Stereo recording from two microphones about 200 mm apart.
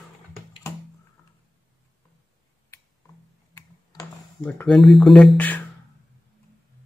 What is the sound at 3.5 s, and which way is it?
Typing, 15° left (ahead or behind).